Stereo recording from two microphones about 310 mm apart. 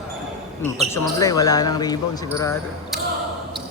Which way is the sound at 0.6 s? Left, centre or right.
Centre.